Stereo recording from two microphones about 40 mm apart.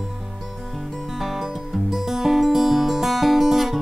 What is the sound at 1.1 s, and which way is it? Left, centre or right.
Music, centre.